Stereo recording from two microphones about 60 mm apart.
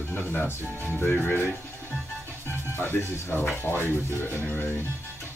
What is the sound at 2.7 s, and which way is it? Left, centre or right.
Speech, left.